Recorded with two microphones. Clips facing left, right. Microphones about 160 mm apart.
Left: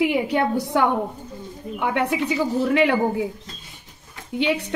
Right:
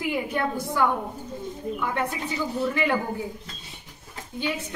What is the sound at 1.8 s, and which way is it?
A woman's voice, 75° left (ahead or behind).